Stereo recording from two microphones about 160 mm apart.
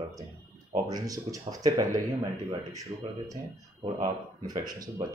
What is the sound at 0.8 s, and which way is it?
Speech, 25° right (ahead or behind).